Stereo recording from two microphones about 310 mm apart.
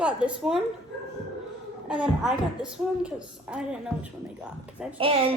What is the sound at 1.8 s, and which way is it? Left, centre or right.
A woman's voice, centre.